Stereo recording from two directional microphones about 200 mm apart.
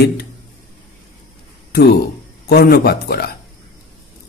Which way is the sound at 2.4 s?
50° left (ahead or behind).